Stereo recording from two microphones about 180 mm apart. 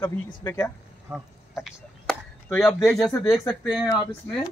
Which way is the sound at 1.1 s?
Centre (ahead or behind).